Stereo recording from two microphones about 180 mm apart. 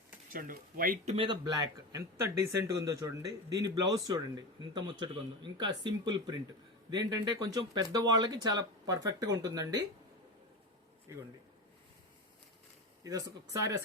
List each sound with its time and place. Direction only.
0.3 s speech: 50° right (ahead or behind)
1.0 s speech: 30° right (ahead or behind)
13.0 s speech: 20° right (ahead or behind)